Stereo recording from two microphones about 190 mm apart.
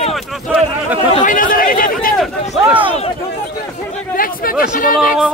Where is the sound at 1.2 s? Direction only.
45° left (ahead or behind).